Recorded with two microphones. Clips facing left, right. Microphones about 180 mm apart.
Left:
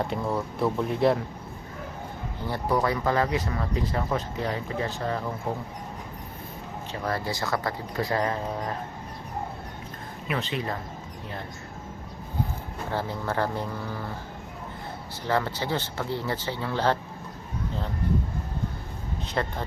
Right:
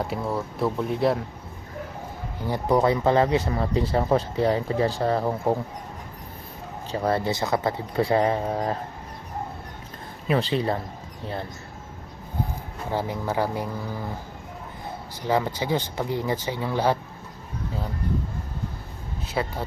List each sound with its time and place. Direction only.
0.0 s speech: centre (ahead or behind)
2.5 s speech: 25° right (ahead or behind)
6.9 s speech: 30° right (ahead or behind)
10.2 s speech: 30° right (ahead or behind)
12.9 s speech: 15° right (ahead or behind)
15.2 s speech: 15° right (ahead or behind)
19.3 s speech: 5° right (ahead or behind)